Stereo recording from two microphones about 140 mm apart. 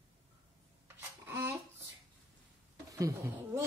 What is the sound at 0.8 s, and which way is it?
Wail, 15° right (ahead or behind).